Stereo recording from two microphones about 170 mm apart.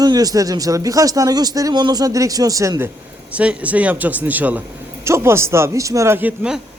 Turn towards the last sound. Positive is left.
turn(degrees=-5)  # may be behind; listen again after turning